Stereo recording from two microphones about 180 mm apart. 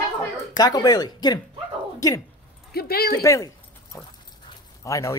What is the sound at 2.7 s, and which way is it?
Speech, 60° left (ahead or behind).